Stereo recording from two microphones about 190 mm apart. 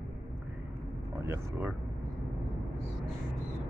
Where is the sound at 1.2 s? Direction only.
15° right (ahead or behind).